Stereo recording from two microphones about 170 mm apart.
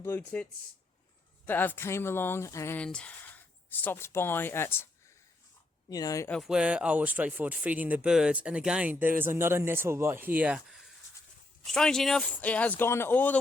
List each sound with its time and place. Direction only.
0.0 s speech: 10° left (ahead or behind)
1.5 s speech: 10° left (ahead or behind)
5.9 s speech: 20° left (ahead or behind)
6.3 s speech: centre (ahead or behind)